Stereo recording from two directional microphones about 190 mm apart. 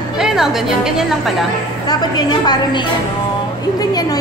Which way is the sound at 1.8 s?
20° left (ahead or behind).